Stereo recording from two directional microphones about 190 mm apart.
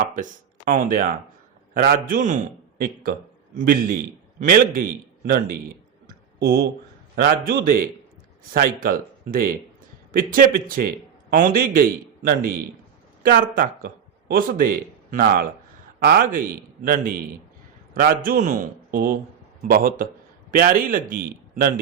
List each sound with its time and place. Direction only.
0.2 s a man's voice: 45° right (ahead or behind)